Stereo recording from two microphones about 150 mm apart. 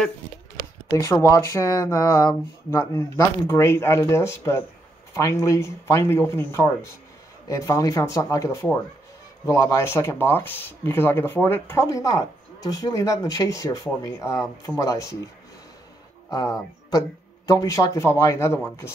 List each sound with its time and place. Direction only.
0.9 s speech: 20° left (ahead or behind)
16.3 s speech: 25° left (ahead or behind)